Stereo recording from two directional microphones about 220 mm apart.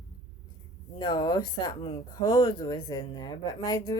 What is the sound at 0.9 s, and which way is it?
Speech, 20° left (ahead or behind).